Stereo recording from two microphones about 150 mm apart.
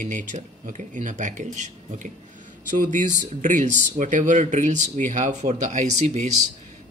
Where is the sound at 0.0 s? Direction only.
55° right (ahead or behind).